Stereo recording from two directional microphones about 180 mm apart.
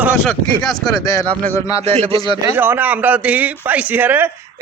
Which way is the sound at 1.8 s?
35° right (ahead or behind).